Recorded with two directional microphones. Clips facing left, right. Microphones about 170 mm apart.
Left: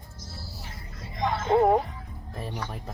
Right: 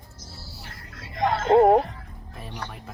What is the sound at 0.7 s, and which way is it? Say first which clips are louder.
Music: left 1 dB; 70° right (ahead or behind).